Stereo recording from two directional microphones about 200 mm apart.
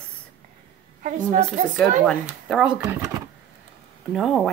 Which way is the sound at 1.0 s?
40° right (ahead or behind).